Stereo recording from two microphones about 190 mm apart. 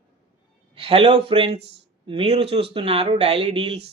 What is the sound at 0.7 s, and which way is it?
A man's voice, 30° right (ahead or behind).